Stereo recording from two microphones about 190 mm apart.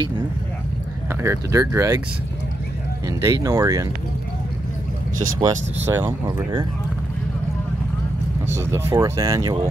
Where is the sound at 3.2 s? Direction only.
15° right (ahead or behind).